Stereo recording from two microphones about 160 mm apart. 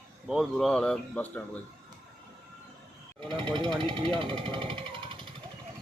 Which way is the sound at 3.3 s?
30° right (ahead or behind).